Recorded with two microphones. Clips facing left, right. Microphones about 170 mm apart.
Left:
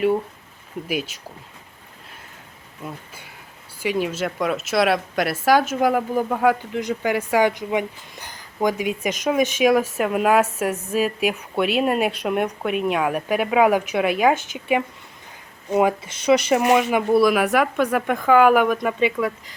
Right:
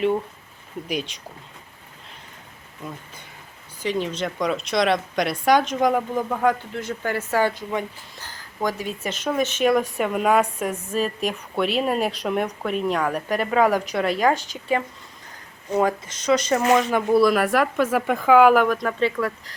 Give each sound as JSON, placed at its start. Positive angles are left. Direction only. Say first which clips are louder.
{"t": 0.9, "sound": "speech", "louder": "left 2 dB", "side_deg": 5}
{"t": 3.8, "sound": "a woman's voice", "louder": "left 2 dB", "side_deg": 10}